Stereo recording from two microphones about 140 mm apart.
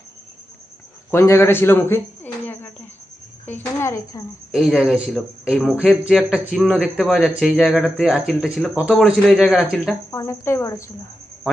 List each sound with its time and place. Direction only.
1.1 s speech: 20° left (ahead or behind)
4.5 s speech: centre (ahead or behind)
10.1 s speech: 20° left (ahead or behind)